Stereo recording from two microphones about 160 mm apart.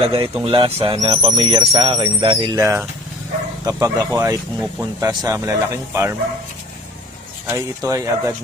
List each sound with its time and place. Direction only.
0.0 s speech: 35° right (ahead or behind)
3.6 s speech: 20° right (ahead or behind)
7.4 s speech: 15° right (ahead or behind)